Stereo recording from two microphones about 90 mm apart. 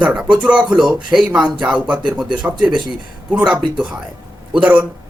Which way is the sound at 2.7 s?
55° right (ahead or behind).